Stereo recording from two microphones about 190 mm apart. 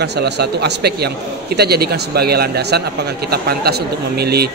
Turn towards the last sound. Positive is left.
turn(degrees=-55)  # may be behind; listen again after turning